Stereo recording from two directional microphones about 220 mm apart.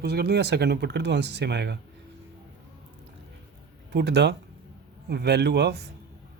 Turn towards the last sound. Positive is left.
turn(degrees=-50)  # may be behind; listen again after turning